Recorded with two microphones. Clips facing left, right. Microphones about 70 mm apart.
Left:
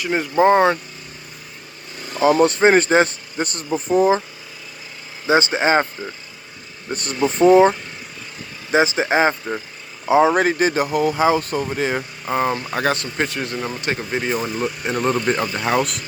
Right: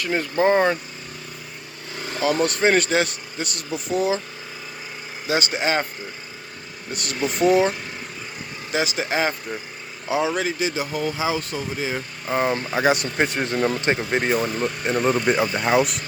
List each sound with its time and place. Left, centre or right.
0.0 s speech: centre
2.1 s speech: left
5.2 s speech: left
6.9 s speech: left
11.6 s speech: left
12.3 s speech: centre
12.6 s speech: centre
13.0 s speech: centre
14.3 s speech: centre